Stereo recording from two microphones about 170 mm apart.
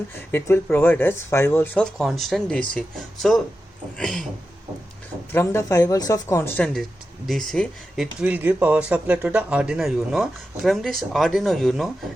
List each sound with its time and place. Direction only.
0.3 s speech: 10° left (ahead or behind)
5.3 s speech: 15° left (ahead or behind)
7.3 s speech: 5° left (ahead or behind)
8.2 s speech: 10° right (ahead or behind)